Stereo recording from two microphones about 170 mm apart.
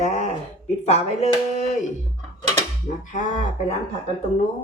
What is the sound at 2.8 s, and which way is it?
Speech, 45° left (ahead or behind).